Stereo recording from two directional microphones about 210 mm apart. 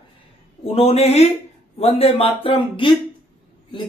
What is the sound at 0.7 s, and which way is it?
Speech, 30° left (ahead or behind).